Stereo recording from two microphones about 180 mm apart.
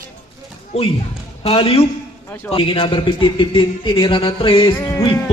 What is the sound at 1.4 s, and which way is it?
Speech, 30° left (ahead or behind).